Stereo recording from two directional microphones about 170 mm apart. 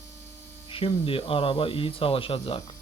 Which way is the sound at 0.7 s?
35° left (ahead or behind).